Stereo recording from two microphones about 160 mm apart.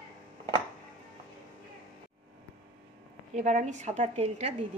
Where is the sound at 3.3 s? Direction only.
50° right (ahead or behind).